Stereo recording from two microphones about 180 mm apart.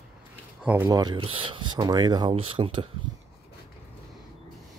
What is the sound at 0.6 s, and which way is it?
Speech, 10° right (ahead or behind).